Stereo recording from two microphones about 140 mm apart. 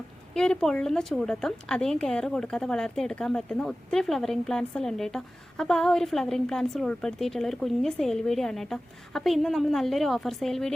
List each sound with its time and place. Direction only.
0.3 s a woman's voice: 5° left (ahead or behind)